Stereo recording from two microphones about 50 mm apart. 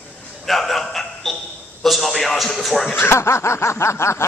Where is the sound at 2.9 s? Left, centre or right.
Left.